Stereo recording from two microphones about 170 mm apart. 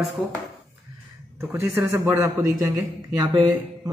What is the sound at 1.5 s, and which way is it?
A man's voice, 15° right (ahead or behind).